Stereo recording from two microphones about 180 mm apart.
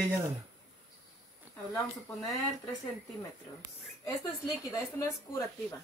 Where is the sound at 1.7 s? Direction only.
20° left (ahead or behind).